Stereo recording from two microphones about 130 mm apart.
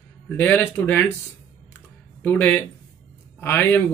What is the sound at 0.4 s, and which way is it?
Speech, 15° left (ahead or behind).